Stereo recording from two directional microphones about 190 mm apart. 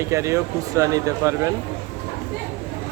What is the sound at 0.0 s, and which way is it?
Speech, 15° right (ahead or behind).